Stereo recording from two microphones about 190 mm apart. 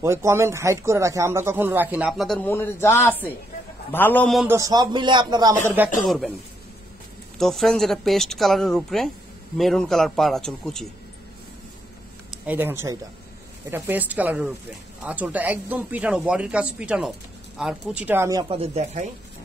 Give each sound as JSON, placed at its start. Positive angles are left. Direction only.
{"t": 0.0, "sound": "a man's voice", "side_deg": -15}
{"t": 4.5, "sound": "speech", "side_deg": -15}
{"t": 6.0, "sound": "a woman's voice", "side_deg": 0}
{"t": 7.3, "sound": "a woman's voice", "side_deg": 0}
{"t": 12.3, "sound": "speech", "side_deg": -10}